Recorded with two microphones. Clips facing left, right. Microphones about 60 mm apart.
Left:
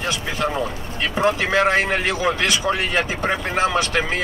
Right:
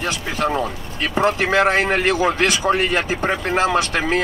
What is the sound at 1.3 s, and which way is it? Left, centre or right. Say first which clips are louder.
Speech: right 1 dB; right.